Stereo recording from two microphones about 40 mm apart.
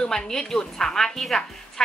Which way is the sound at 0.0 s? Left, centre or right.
Centre.